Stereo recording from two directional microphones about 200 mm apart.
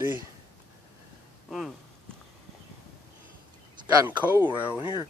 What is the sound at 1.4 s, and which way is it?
Speech, centre (ahead or behind).